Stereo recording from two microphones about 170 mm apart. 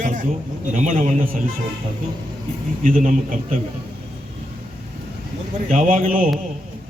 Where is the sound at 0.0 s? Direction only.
50° right (ahead or behind).